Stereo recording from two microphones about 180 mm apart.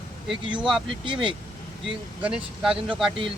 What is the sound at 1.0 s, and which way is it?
Speech, 30° right (ahead or behind).